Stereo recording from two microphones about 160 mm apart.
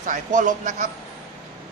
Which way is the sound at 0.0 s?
50° right (ahead or behind).